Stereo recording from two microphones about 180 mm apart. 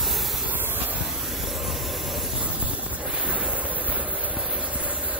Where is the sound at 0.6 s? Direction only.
10° right (ahead or behind).